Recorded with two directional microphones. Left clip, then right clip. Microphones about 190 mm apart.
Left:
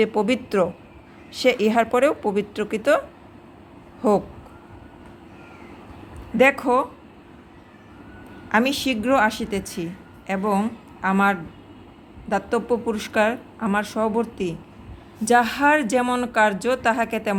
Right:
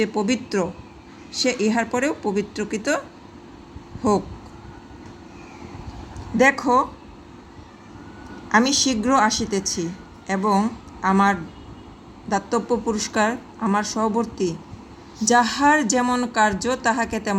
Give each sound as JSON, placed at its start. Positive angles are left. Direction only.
{"t": 0.0, "sound": "a woman's voice", "side_deg": 15}
{"t": 6.3, "sound": "a woman's voice", "side_deg": 15}
{"t": 8.4, "sound": "a woman's voice", "side_deg": 5}